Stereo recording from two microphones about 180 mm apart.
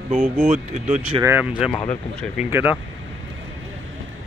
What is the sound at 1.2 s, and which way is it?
Speech, 10° right (ahead or behind).